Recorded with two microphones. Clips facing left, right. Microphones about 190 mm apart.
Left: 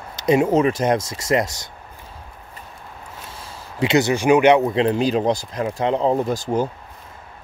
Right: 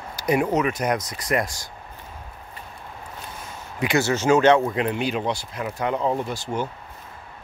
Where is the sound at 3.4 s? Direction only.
25° left (ahead or behind).